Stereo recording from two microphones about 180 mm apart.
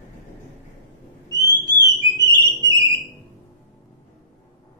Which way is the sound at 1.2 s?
20° right (ahead or behind).